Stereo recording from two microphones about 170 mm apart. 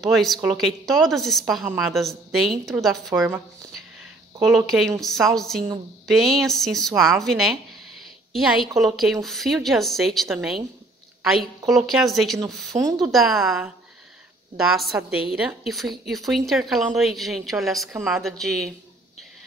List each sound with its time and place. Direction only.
0.0 s a woman's voice: centre (ahead or behind)
4.6 s a woman's voice: centre (ahead or behind)
12.7 s speech: 45° right (ahead or behind)
13.1 s a woman's voice: centre (ahead or behind)
14.7 s a woman's voice: centre (ahead or behind)